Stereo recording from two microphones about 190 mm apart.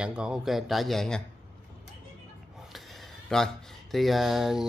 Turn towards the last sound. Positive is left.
turn(degrees=0)  # may be behind; listen again after turning